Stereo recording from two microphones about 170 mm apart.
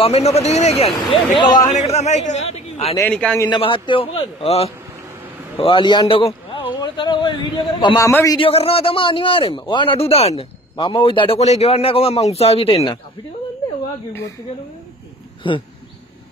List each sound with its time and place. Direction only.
0.0 s speech: 35° left (ahead or behind)
3.0 s a man's voice: 5° left (ahead or behind)
3.4 s a man's voice: 30° left (ahead or behind)
8.4 s speech: 35° left (ahead or behind)
15.4 s a man's voice: 30° left (ahead or behind)